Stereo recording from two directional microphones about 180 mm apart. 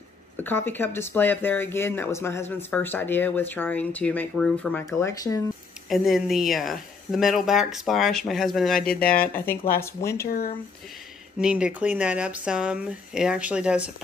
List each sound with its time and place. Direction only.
0.4 s speech: 10° left (ahead or behind)
5.9 s speech: centre (ahead or behind)
10.2 s speech: 55° left (ahead or behind)
11.3 s speech: 5° right (ahead or behind)